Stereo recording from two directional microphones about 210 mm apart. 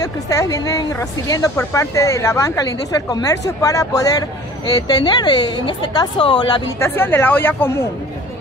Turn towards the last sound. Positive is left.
turn(degrees=10)  # may be behind; listen again after turning